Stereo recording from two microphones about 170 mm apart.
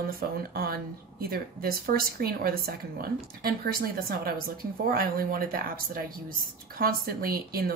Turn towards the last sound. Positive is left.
turn(degrees=-60)  # may be behind; listen again after turning